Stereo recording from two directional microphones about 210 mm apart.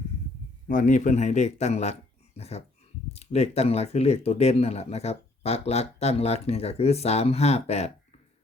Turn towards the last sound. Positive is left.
turn(degrees=30)  # may be behind; listen again after turning